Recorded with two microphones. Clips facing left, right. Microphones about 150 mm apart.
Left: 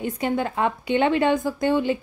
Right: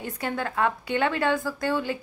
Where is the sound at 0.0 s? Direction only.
20° left (ahead or behind).